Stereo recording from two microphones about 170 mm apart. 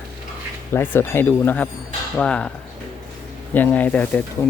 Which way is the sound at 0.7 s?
15° left (ahead or behind).